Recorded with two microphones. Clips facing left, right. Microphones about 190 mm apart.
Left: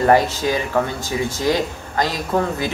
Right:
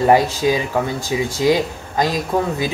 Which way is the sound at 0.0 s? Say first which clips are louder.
Right 1 dB; 10° right (ahead or behind).